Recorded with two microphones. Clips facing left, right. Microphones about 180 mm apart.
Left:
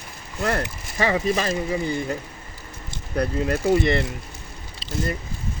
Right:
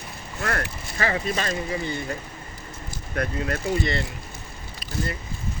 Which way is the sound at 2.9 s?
15° left (ahead or behind).